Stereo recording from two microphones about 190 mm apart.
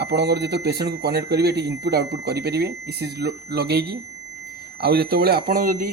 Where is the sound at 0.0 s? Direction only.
60° right (ahead or behind).